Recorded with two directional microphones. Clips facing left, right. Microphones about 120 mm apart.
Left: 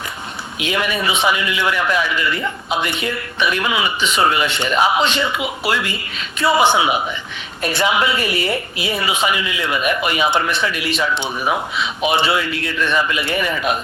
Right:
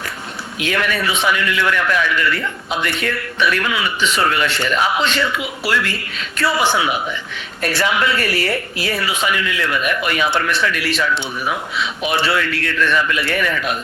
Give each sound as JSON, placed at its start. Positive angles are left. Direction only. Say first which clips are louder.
{"t": 0.6, "sound": "a man's voice", "louder": "even", "side_deg": 15}
{"t": 12.1, "sound": "speech", "louder": "right 1 dB", "side_deg": 20}